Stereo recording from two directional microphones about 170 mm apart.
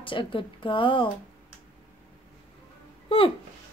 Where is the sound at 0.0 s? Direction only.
30° left (ahead or behind).